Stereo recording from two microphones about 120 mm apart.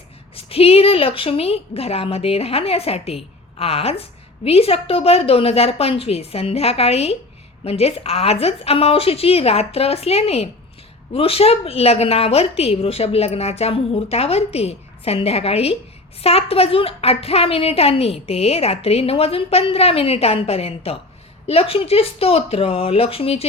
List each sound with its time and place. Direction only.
0.3 s a woman's voice: 55° left (ahead or behind)